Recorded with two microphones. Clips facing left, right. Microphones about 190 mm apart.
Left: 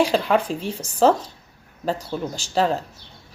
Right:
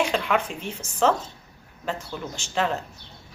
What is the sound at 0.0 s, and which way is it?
Speech, 35° left (ahead or behind).